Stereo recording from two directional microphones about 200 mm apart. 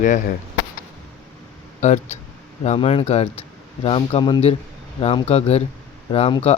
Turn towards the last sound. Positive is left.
turn(degrees=30)  # may be behind; listen again after turning